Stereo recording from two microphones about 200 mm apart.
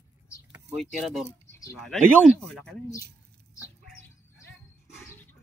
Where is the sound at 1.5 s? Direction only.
15° left (ahead or behind).